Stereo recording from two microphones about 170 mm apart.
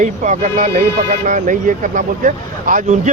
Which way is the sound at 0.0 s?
45° right (ahead or behind).